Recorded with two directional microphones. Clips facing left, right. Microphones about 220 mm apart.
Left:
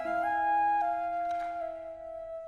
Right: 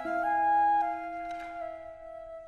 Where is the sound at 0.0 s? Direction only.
25° left (ahead or behind).